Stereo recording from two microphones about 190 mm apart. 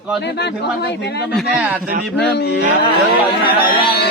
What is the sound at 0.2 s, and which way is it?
Speech, 65° left (ahead or behind).